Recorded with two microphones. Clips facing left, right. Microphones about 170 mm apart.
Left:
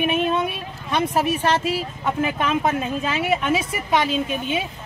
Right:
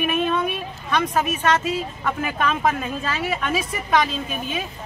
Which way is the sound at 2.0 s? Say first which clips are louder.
Left 2 dB; 20° left (ahead or behind).